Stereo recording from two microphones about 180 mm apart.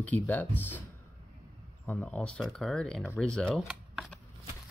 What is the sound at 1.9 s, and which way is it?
Speech, 10° left (ahead or behind).